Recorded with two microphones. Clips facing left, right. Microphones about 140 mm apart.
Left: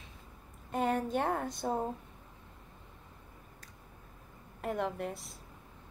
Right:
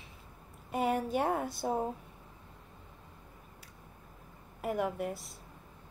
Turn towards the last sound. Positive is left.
turn(degrees=-5)  # may be behind; listen again after turning